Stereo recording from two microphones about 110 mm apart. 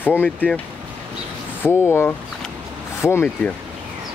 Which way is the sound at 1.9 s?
20° left (ahead or behind).